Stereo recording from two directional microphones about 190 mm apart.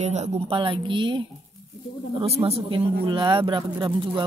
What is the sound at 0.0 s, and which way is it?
Speech, 35° right (ahead or behind).